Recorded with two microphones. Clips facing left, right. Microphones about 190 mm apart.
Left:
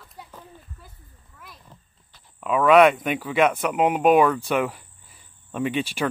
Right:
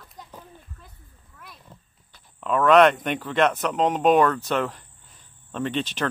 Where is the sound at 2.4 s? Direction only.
5° left (ahead or behind).